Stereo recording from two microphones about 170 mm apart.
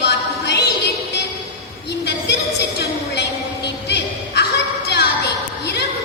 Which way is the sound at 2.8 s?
80° left.